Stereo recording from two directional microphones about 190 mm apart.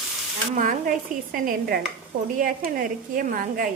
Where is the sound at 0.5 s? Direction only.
45° right (ahead or behind).